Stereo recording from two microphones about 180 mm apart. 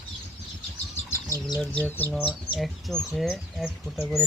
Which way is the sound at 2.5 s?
Centre (ahead or behind).